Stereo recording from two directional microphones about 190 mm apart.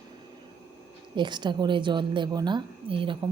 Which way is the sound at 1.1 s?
25° right (ahead or behind).